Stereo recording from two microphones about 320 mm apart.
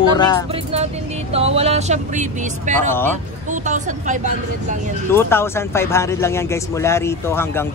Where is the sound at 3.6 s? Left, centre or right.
Right.